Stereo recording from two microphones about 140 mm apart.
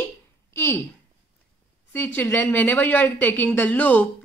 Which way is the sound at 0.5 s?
15° left (ahead or behind).